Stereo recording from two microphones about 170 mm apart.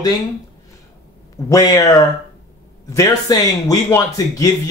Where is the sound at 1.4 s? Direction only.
20° left (ahead or behind).